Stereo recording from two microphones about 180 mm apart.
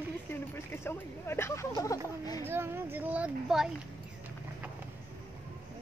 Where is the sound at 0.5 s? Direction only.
15° left (ahead or behind).